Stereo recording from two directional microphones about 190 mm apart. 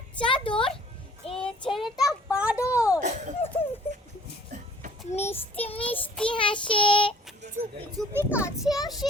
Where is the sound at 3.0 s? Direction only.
40° right (ahead or behind).